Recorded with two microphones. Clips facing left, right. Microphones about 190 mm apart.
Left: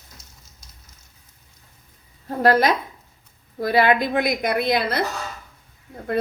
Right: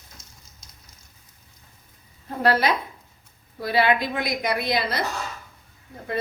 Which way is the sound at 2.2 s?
45° left (ahead or behind).